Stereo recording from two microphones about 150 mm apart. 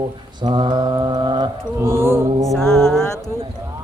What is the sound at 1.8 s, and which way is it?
Mantra, 15° right (ahead or behind).